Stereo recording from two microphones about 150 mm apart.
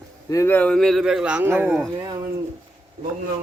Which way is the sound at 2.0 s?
30° right (ahead or behind).